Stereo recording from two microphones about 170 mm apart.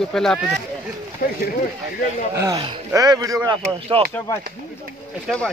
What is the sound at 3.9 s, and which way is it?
Speech, 35° right (ahead or behind).